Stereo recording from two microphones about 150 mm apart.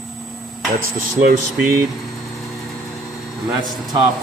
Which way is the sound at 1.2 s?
70° right (ahead or behind).